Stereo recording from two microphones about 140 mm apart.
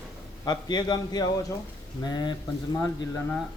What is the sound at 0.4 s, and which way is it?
A man's voice, 30° left (ahead or behind).